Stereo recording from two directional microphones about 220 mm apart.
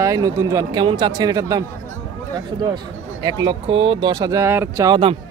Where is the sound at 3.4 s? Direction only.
20° right (ahead or behind).